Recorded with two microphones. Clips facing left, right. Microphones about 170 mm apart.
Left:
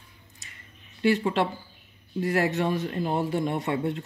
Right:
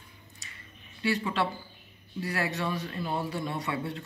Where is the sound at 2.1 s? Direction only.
45° left (ahead or behind).